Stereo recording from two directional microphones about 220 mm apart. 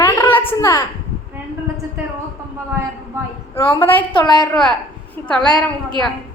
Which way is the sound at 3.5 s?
10° left (ahead or behind).